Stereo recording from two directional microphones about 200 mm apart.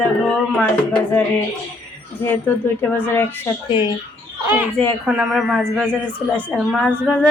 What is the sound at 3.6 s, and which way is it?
Speech, 25° left (ahead or behind).